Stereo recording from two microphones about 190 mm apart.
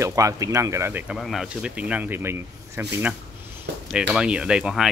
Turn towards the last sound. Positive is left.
turn(degrees=-5)  # may be behind; listen again after turning